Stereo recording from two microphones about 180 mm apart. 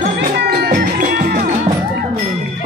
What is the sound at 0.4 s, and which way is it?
Music, 60° right (ahead or behind).